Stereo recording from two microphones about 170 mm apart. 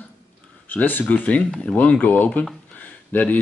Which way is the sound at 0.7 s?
10° left (ahead or behind).